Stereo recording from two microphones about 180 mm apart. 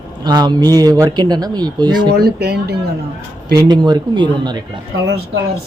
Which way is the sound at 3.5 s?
25° right (ahead or behind).